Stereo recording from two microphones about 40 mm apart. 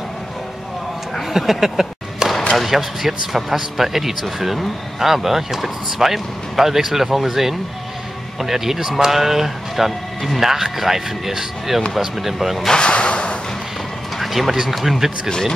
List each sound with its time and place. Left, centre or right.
1.3 s a sound: centre
2.5 s speech: centre
12.7 s speech: left
14.1 s speech: centre
15.2 s speech: centre